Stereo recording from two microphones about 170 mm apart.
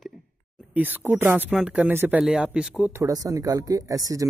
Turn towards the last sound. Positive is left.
turn(degrees=-20)  # may be behind; listen again after turning